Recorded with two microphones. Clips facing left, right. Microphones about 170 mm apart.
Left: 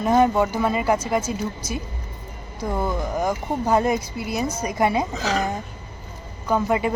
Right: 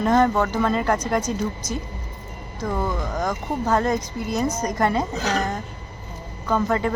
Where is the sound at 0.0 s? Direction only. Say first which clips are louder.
Left 1 dB; 10° left (ahead or behind).